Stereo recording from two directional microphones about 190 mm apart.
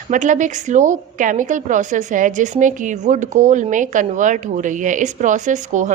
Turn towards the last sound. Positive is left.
turn(degrees=-40)  # may be behind; listen again after turning